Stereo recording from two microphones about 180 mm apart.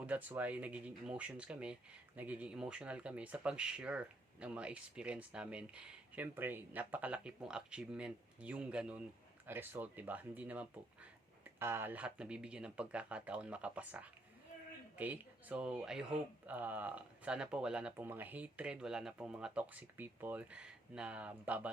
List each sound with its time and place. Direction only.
0.0 s speech: 10° right (ahead or behind)